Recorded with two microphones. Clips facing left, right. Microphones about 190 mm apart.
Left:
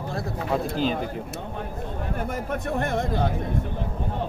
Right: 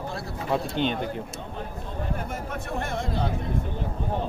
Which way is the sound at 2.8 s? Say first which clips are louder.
Left 4 dB; 55° left (ahead or behind).